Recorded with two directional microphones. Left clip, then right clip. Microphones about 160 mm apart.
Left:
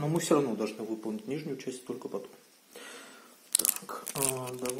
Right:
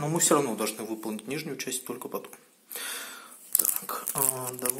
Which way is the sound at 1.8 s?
20° right (ahead or behind).